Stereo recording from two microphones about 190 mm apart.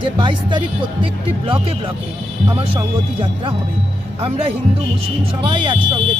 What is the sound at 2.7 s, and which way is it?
Speech, 30° right (ahead or behind).